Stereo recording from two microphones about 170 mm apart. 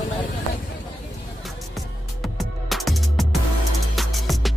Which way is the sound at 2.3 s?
Centre (ahead or behind).